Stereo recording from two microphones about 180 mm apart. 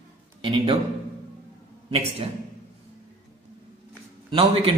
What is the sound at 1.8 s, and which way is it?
Speech, 35° right (ahead or behind).